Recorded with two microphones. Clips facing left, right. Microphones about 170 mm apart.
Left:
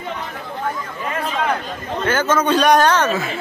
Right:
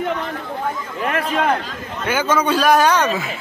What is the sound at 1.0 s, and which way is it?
Speech, 75° right (ahead or behind).